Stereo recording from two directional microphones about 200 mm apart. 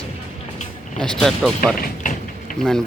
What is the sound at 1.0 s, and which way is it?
Speech, centre (ahead or behind).